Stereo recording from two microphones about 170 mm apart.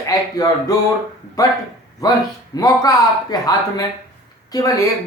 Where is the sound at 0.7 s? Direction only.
20° left (ahead or behind).